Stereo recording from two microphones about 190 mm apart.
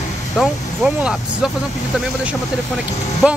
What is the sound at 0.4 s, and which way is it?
Speech, 5° right (ahead or behind).